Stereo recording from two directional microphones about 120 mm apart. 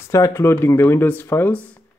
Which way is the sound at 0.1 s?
25° left (ahead or behind).